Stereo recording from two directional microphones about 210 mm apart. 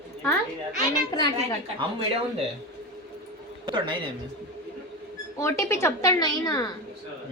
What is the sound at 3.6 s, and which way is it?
Speech, 20° right (ahead or behind).